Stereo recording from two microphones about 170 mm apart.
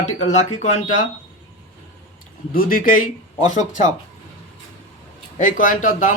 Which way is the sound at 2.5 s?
55° left (ahead or behind).